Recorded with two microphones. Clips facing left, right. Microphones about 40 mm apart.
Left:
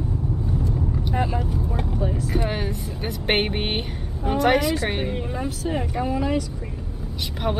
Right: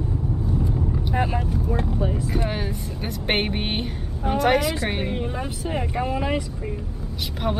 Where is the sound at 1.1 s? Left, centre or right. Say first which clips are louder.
Right 1 dB; centre.